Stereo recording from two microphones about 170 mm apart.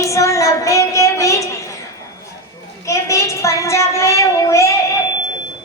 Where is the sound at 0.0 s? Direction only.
15° left (ahead or behind).